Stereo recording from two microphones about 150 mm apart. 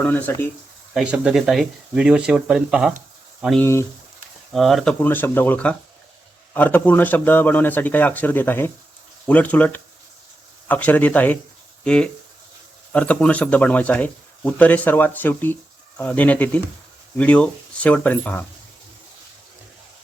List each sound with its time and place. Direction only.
0.0 s speech: 10° left (ahead or behind)
0.9 s speech: 5° right (ahead or behind)
3.6 s speech: 20° left (ahead or behind)
4.5 s speech: centre (ahead or behind)
4.9 s speech: 15° left (ahead or behind)